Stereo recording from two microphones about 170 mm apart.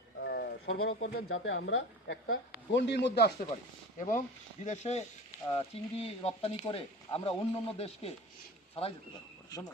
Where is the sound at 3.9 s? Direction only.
50° left (ahead or behind); by 7.4 s 30° left (ahead or behind).